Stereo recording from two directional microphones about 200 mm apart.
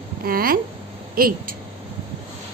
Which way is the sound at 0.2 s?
45° right (ahead or behind).